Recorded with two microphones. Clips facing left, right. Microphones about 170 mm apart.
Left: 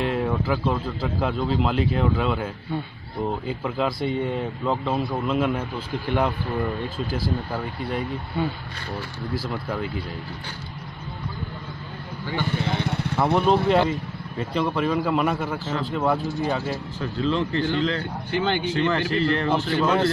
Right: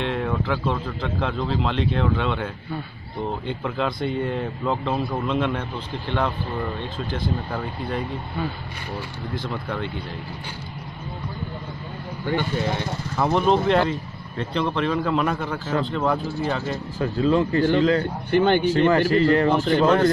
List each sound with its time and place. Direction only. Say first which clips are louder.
0.0 s speech: left 1 dB; 10° left (ahead or behind)
9.3 s speech: left 1 dB; 5° left (ahead or behind)
12.3 s speech: right 3 dB; 55° right (ahead or behind)
12.7 s speech: left 2 dB; 65° left (ahead or behind)
13.2 s speech: even; centre (ahead or behind)
17.0 s speech: right 5 dB; 50° right (ahead or behind)